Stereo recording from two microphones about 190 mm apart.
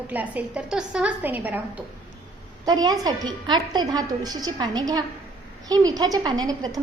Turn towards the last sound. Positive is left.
turn(degrees=-20)  # may be behind; listen again after turning